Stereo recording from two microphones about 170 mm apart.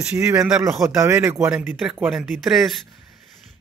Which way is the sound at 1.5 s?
5° right (ahead or behind).